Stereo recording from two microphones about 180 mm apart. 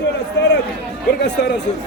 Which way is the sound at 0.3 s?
70° left (ahead or behind).